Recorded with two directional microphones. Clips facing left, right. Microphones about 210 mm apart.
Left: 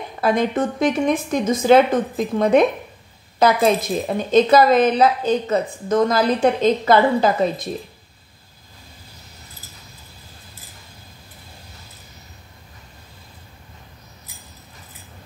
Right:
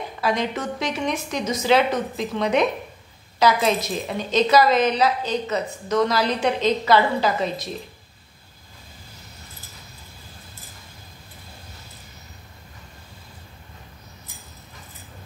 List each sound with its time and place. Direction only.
0.2 s a woman's voice: 50° left (ahead or behind)